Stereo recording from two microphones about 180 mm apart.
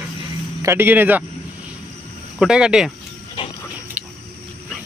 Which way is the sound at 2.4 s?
5° right (ahead or behind).